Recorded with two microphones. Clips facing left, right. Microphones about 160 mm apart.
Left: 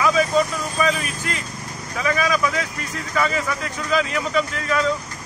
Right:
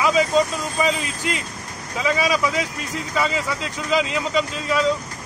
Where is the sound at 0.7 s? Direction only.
20° right (ahead or behind).